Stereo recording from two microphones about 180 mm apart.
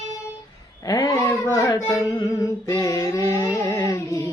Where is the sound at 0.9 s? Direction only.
20° left (ahead or behind).